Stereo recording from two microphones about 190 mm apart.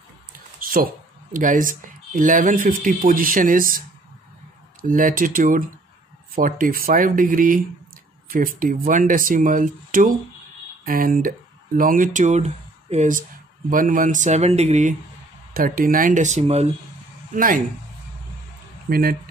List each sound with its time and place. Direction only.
1.3 s speech: 45° right (ahead or behind)
4.8 s speech: 45° right (ahead or behind)
15.5 s speech: 50° right (ahead or behind)
17.3 s speech: 45° right (ahead or behind)
18.9 s speech: 50° right (ahead or behind)